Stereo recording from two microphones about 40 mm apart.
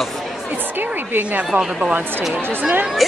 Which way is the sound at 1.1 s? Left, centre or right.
Right.